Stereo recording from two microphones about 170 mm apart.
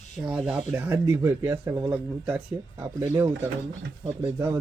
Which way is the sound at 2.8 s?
20° right (ahead or behind).